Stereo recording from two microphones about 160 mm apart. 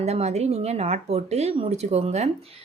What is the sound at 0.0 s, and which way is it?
Speech, 45° right (ahead or behind).